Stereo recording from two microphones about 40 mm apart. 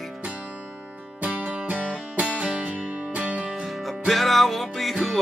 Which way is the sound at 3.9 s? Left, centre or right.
Centre.